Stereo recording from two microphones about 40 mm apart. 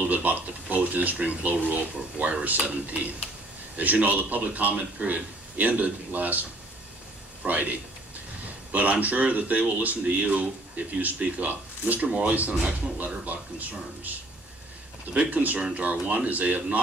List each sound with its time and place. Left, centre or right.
0.1 s a sound: right
1.2 s speech: right
7.4 s speech: right
8.7 s speech: right
15.1 s speech: right